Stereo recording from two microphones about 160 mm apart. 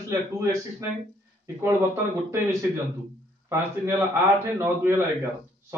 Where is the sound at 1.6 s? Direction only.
20° right (ahead or behind).